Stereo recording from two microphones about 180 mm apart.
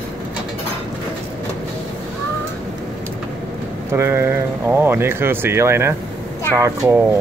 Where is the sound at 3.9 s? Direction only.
15° right (ahead or behind).